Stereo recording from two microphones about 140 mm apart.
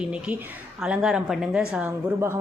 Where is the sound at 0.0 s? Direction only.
10° right (ahead or behind).